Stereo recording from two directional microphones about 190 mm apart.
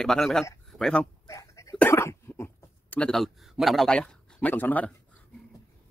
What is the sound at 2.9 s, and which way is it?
A man's voice, 5° left (ahead or behind).